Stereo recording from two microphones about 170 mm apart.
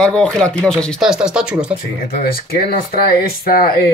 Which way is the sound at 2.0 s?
60° left (ahead or behind).